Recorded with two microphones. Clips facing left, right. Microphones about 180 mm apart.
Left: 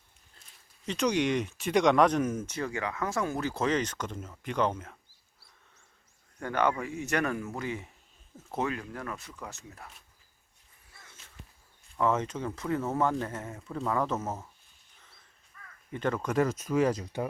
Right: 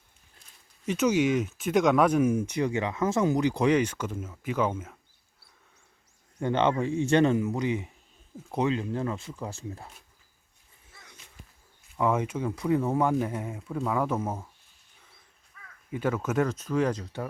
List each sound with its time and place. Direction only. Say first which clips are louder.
0.9 s speech: right 4 dB; 5° right (ahead or behind)
6.4 s speech: right 4 dB; 25° right (ahead or behind)
10.9 s a sound: right 2 dB; 15° right (ahead or behind)
11.9 s speech: right 2 dB; 10° right (ahead or behind)
15.9 s speech: right 2 dB; 5° right (ahead or behind)
16.5 s speech: even; 10° left (ahead or behind)